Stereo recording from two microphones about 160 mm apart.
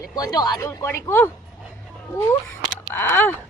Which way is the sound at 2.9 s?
10° left (ahead or behind).